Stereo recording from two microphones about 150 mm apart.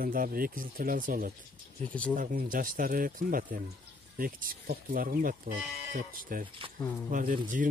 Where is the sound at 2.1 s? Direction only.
60° right (ahead or behind).